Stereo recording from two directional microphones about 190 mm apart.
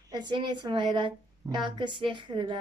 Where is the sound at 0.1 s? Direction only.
25° right (ahead or behind).